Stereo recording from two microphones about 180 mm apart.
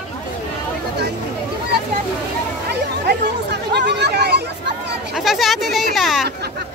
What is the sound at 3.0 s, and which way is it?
Chatter, 65° right (ahead or behind).